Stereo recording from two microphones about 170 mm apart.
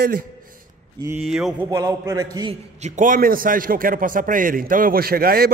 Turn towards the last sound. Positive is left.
turn(degrees=-60)  # may be behind; listen again after turning